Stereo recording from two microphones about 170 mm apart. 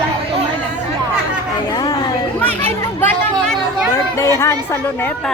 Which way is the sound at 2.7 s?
10° left (ahead or behind).